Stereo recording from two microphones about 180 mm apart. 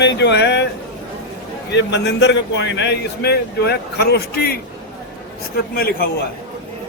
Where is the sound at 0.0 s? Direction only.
75° left (ahead or behind).